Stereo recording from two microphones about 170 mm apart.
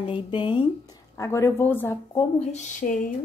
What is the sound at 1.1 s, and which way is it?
Speech, 15° left (ahead or behind).